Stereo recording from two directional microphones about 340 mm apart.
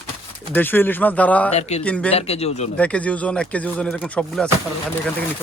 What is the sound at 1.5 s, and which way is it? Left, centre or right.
Speech, centre.